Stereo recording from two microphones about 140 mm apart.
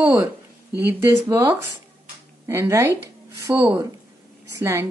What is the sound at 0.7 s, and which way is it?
A woman's voice, 20° right (ahead or behind).